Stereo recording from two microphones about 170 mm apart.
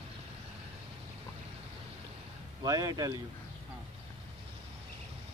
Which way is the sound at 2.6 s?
20° right (ahead or behind).